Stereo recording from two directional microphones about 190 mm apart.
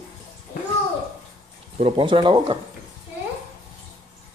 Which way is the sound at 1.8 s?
30° right (ahead or behind).